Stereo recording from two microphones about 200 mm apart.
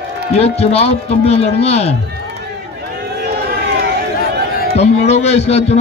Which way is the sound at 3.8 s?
50° right (ahead or behind).